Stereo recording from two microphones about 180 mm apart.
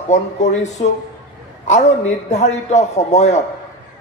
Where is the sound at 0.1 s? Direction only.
40° left (ahead or behind).